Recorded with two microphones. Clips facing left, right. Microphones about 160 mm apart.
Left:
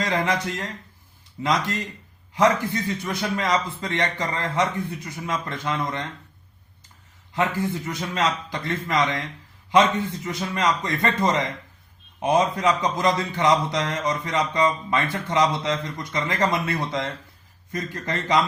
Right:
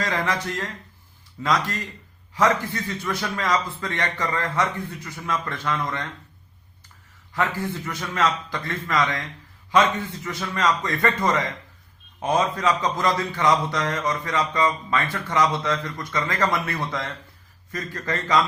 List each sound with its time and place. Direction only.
0.0 s a man's voice: 15° left (ahead or behind)
7.3 s a man's voice: 20° left (ahead or behind)